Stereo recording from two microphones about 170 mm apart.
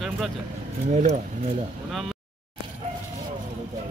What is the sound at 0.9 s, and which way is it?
Speech, 45° right (ahead or behind).